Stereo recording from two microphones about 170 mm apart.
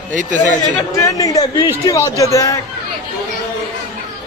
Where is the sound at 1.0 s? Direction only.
20° left (ahead or behind).